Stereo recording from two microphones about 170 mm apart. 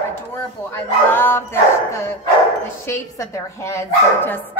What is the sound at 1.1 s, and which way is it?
Speech, 15° left (ahead or behind).